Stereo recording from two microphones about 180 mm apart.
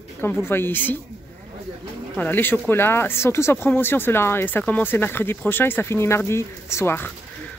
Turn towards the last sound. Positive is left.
turn(degrees=10)  # may be behind; listen again after turning